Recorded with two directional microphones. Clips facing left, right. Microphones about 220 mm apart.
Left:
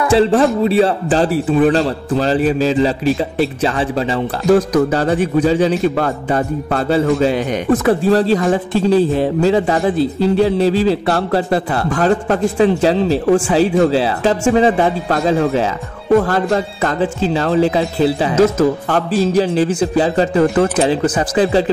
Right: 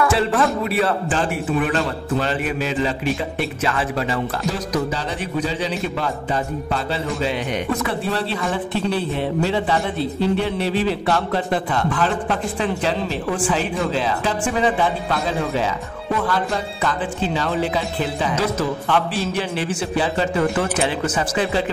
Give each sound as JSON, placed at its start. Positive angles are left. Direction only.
{"t": 0.0, "sound": "a man's voice", "side_deg": 30}
{"t": 4.6, "sound": "a man's voice", "side_deg": 50}